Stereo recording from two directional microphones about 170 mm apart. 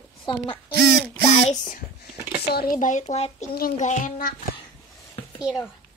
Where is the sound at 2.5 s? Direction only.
65° left (ahead or behind).